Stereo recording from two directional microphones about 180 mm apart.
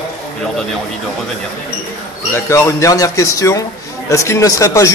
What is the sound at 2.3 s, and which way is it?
A man's voice, 15° left (ahead or behind).